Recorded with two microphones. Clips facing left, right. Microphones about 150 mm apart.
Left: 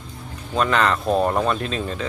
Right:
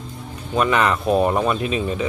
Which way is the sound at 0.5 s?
10° right (ahead or behind).